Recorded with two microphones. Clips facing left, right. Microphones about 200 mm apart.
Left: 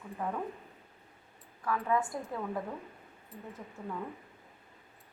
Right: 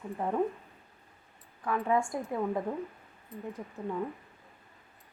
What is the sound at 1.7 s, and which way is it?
Speech, 25° right (ahead or behind).